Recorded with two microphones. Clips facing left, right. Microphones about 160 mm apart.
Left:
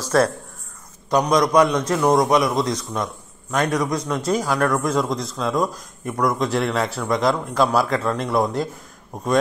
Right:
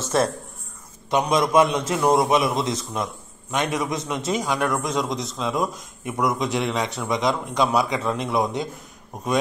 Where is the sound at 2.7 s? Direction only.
25° right (ahead or behind).